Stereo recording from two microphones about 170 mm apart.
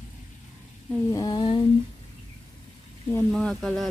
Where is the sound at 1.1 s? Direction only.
25° left (ahead or behind).